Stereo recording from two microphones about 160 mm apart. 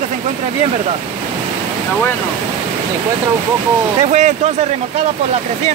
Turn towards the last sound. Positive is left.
turn(degrees=-45)  # may be behind; listen again after turning